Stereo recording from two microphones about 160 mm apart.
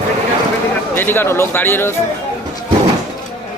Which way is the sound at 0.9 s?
15° left (ahead or behind).